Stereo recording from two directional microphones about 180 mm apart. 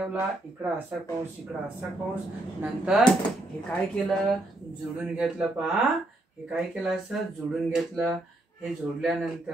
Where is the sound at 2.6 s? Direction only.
5° right (ahead or behind).